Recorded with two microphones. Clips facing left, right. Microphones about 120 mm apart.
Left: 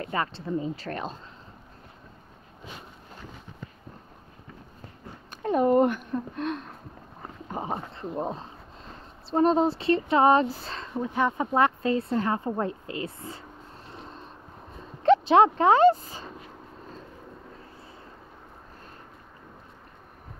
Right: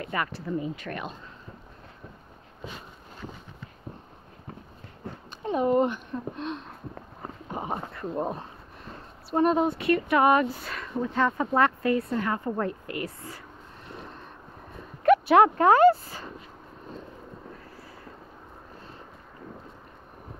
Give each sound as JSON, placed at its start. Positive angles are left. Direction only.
{"t": 0.0, "sound": "speech", "side_deg": 25}
{"t": 5.3, "sound": "speech", "side_deg": 50}
{"t": 7.5, "sound": "a sound", "side_deg": 25}
{"t": 9.3, "sound": "speech", "side_deg": 30}
{"t": 11.1, "sound": "speech", "side_deg": 15}
{"t": 15.0, "sound": "speech", "side_deg": 25}